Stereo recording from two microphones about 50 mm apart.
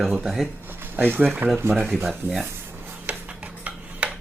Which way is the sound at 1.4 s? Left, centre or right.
Right.